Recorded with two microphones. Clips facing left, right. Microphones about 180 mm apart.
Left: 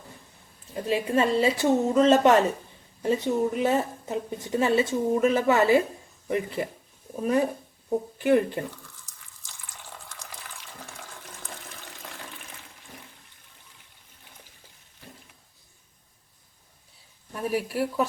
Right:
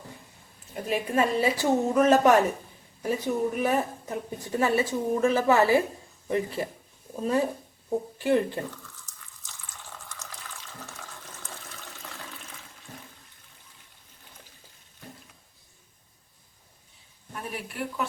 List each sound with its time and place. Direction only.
0.9 s a woman's voice: 30° left (ahead or behind)
10.2 s water: 15° left (ahead or behind)
17.5 s speech: 35° left (ahead or behind)